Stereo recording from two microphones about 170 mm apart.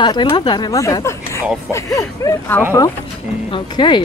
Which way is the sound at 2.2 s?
20° left (ahead or behind).